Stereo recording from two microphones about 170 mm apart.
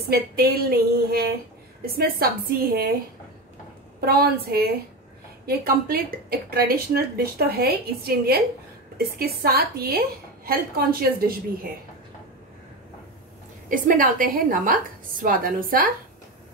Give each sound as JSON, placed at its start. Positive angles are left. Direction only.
{"t": 0.1, "sound": "speech", "side_deg": -65}
{"t": 4.0, "sound": "speech", "side_deg": -65}
{"t": 9.4, "sound": "speech", "side_deg": -65}
{"t": 13.7, "sound": "a woman's voice", "side_deg": -50}